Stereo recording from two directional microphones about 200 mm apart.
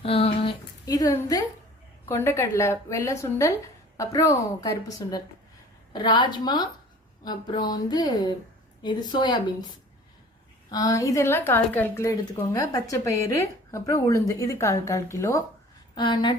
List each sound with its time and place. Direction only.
0.0 s speech: 30° left (ahead or behind)
0.9 s speech: 20° left (ahead or behind)
10.7 s speech: 15° left (ahead or behind)